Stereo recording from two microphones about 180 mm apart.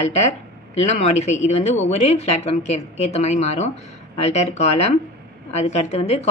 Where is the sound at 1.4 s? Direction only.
40° left (ahead or behind).